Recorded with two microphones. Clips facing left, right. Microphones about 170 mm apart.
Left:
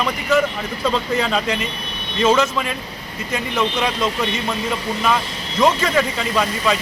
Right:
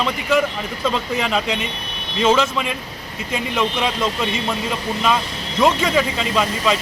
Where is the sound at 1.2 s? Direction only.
15° right (ahead or behind).